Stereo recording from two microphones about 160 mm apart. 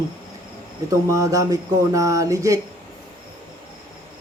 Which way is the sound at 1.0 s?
20° right (ahead or behind).